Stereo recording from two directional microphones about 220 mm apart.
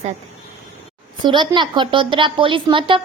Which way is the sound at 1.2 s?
20° right (ahead or behind).